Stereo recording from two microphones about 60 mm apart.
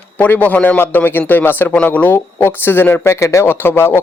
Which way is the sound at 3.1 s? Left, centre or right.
Left.